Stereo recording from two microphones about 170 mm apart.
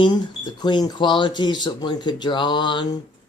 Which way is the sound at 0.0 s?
25° left (ahead or behind).